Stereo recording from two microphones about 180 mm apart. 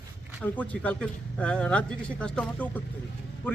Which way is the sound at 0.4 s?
10° left (ahead or behind).